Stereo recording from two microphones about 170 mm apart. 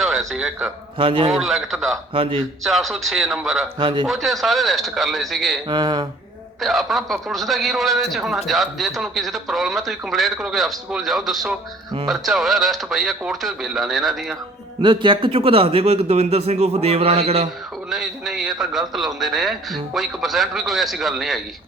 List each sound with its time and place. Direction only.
0.0 s a man's voice: centre (ahead or behind)
0.9 s a man's voice: 30° right (ahead or behind)
1.3 s a man's voice: centre (ahead or behind)
2.1 s a man's voice: 35° right (ahead or behind)
2.6 s a man's voice: centre (ahead or behind)
3.8 s speech: 30° right (ahead or behind)
4.0 s a man's voice: centre (ahead or behind)
5.6 s speech: 25° right (ahead or behind)
6.6 s a man's voice: centre (ahead or behind)
14.8 s a man's voice: 30° right (ahead or behind)
17.8 s a man's voice: centre (ahead or behind)